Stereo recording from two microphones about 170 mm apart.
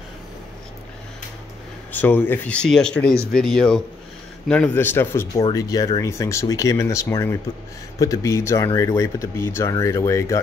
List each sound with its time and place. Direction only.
1.9 s speech: 10° left (ahead or behind)